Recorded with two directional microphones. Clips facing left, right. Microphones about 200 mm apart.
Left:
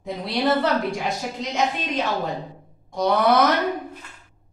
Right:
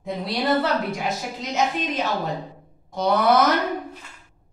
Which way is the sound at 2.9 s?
Centre (ahead or behind).